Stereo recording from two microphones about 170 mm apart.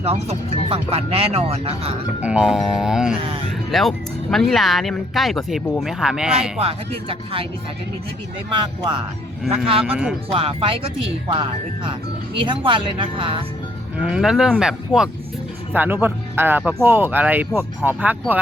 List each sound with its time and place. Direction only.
0.0 s speech: 35° right (ahead or behind)
2.2 s speech: 5° right (ahead or behind)
6.6 s speech: 35° right (ahead or behind)
8.5 s speech: 30° right (ahead or behind)
9.9 s speech: 5° right (ahead or behind)
10.3 s speech: 35° right (ahead or behind)
14.0 s speech: 5° right (ahead or behind)